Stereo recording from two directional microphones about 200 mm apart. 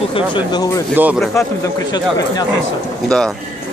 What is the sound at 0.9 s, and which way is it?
Speech, 5° right (ahead or behind).